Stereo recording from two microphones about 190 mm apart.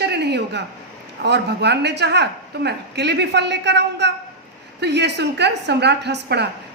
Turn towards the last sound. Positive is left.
turn(degrees=-65)  # may be behind; listen again after turning